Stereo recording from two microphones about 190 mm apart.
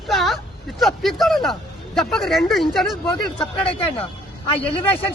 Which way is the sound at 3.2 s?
25° left (ahead or behind).